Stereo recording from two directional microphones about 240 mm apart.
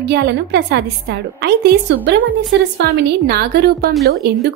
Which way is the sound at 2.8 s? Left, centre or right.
Right.